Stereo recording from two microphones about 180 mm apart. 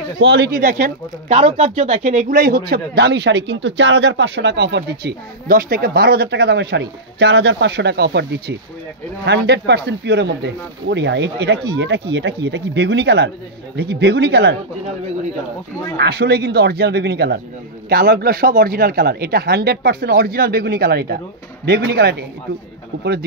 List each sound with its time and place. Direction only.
0.2 s a man's voice: 75° right (ahead or behind)
0.6 s speech: 50° right (ahead or behind)
1.3 s speech: 35° right (ahead or behind)
2.3 s a man's voice: 55° right (ahead or behind)
16.0 s a man's voice: 65° right (ahead or behind)